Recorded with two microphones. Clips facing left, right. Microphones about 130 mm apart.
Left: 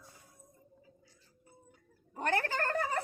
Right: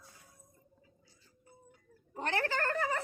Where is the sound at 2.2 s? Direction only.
45° left (ahead or behind).